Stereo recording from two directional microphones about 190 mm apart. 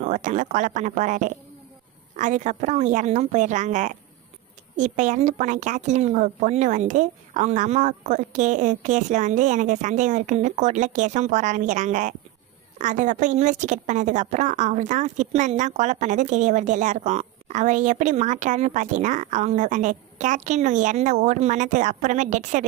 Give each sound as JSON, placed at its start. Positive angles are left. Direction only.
{"t": 0.0, "sound": "a woman's voice", "side_deg": -40}